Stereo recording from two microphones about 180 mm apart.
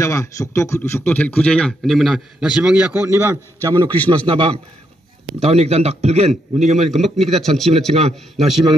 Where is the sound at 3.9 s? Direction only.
10° left (ahead or behind).